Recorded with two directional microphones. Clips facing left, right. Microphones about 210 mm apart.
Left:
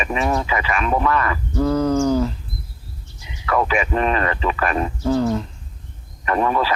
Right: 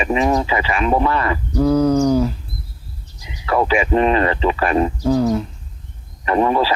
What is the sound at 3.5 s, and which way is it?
Speech, 30° right (ahead or behind).